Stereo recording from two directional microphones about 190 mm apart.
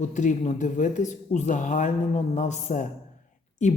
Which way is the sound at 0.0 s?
40° left (ahead or behind).